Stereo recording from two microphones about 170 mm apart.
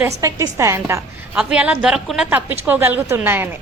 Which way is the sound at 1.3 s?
5° right (ahead or behind).